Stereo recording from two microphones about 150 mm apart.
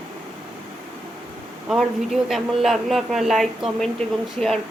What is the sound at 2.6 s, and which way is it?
A woman's voice, centre (ahead or behind).